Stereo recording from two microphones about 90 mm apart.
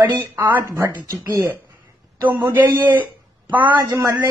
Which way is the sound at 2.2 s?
45° right (ahead or behind).